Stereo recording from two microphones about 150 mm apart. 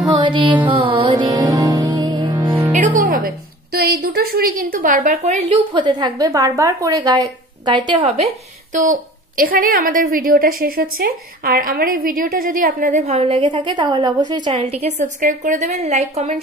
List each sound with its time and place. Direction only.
0.0 s music: 30° right (ahead or behind)
2.7 s music: 60° right (ahead or behind)
3.7 s a woman's voice: 90° right; by 5.4 s 50° right (ahead or behind)
5.5 s a woman's voice: 35° right (ahead or behind)
8.7 s a woman's voice: 60° right (ahead or behind)